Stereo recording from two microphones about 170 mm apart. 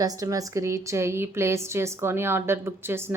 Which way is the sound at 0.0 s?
20° right (ahead or behind).